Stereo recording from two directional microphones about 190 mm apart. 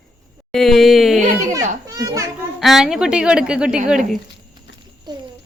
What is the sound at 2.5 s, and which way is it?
A woman's voice, centre (ahead or behind).